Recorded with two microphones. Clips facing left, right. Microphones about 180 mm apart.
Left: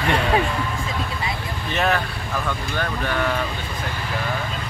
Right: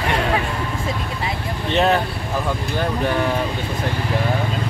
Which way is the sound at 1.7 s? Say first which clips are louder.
Right 5 dB; 30° right (ahead or behind).